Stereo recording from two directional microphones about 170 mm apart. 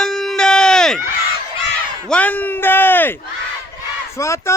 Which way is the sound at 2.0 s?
10° left (ahead or behind).